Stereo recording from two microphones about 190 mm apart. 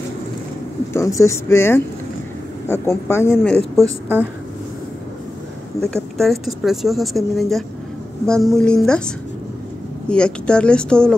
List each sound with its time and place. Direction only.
0.9 s a woman's voice: 15° left (ahead or behind)
3.7 s a woman's voice: 15° right (ahead or behind)
5.8 s a woman's voice: 15° left (ahead or behind)
6.1 s a woman's voice: centre (ahead or behind)